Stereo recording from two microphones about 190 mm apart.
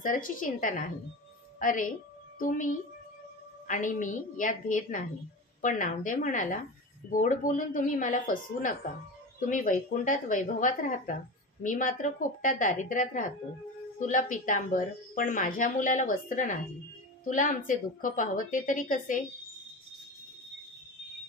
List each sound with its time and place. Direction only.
0.0 s a woman's voice: 45° left (ahead or behind)